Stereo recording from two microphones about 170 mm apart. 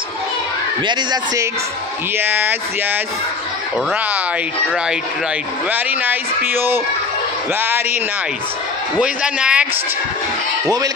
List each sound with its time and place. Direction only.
0.8 s a man's voice: 20° right (ahead or behind)
5.7 s a man's voice: 10° right (ahead or behind)
9.0 s a man's voice: 5° right (ahead or behind)